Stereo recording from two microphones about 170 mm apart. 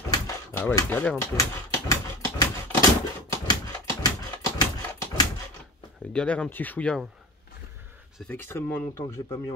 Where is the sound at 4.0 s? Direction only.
20° left (ahead or behind).